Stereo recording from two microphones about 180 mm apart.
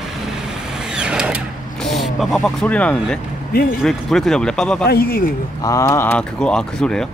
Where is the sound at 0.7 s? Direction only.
5° right (ahead or behind).